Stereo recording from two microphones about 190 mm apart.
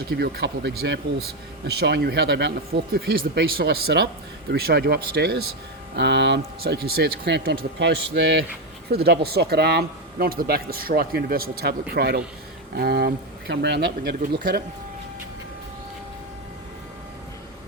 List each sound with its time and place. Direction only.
0.2 s speech: 60° right (ahead or behind)
6.0 s speech: 65° right (ahead or behind); by 14.6 s 50° right (ahead or behind)